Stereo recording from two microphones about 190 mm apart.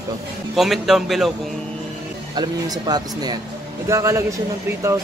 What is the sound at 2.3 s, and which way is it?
Speech, 20° right (ahead or behind).